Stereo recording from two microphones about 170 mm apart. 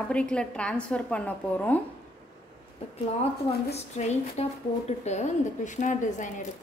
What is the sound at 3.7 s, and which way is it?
A woman's voice, 40° left (ahead or behind).